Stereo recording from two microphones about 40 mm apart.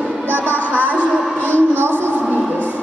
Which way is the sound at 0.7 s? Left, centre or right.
Right.